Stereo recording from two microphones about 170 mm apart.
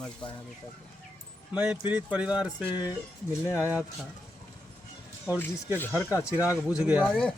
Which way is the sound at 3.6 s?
10° right (ahead or behind).